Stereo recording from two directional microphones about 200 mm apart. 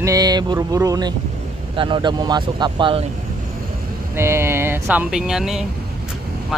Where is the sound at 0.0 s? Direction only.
20° right (ahead or behind).